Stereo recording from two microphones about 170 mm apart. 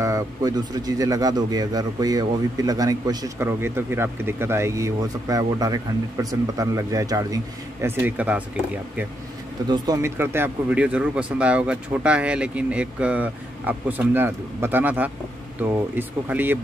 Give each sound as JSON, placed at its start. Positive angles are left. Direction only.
{"t": 0.0, "sound": "a man's voice", "side_deg": -20}
{"t": 9.7, "sound": "speech", "side_deg": -20}